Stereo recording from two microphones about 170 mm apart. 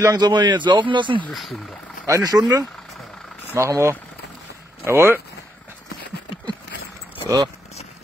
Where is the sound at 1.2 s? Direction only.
Centre (ahead or behind).